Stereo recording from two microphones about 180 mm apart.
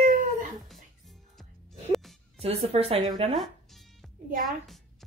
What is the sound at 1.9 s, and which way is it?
Music, centre (ahead or behind).